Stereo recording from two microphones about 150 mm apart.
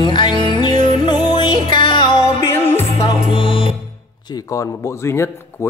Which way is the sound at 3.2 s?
35° left (ahead or behind).